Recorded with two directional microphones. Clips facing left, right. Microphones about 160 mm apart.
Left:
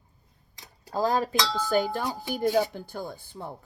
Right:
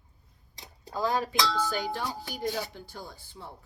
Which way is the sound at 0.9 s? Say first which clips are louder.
Left 4 dB; 40° left (ahead or behind).